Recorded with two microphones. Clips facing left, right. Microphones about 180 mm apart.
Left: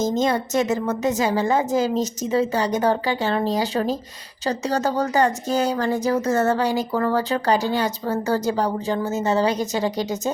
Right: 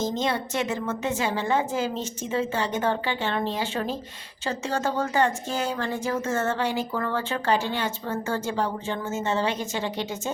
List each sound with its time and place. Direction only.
0.0 s speech: 45° left (ahead or behind)